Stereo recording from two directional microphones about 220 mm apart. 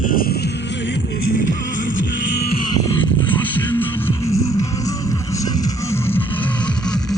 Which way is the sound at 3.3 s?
10° left (ahead or behind).